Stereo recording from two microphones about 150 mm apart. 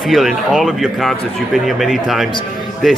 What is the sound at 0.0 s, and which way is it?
Speech, centre (ahead or behind).